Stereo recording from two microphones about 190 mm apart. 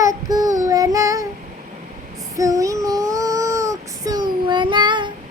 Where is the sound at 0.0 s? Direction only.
20° right (ahead or behind).